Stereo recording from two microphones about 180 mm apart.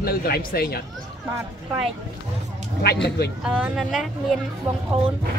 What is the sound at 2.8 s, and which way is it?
Speech, 65° left (ahead or behind).